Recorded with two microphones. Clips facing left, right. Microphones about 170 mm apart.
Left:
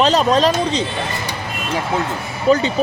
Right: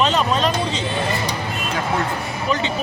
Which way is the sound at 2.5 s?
35° left (ahead or behind).